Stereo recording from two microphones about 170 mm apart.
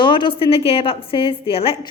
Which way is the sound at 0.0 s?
30° left (ahead or behind).